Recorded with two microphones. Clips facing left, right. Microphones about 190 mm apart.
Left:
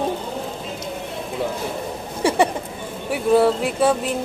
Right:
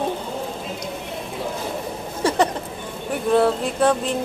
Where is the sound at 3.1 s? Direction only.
5° left (ahead or behind).